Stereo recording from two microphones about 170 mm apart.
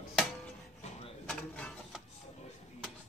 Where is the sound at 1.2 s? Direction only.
5° left (ahead or behind).